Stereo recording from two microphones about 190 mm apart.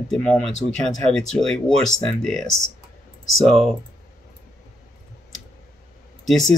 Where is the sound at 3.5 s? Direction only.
Centre (ahead or behind).